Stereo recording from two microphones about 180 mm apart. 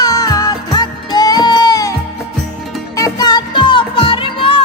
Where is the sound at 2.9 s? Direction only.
20° left (ahead or behind).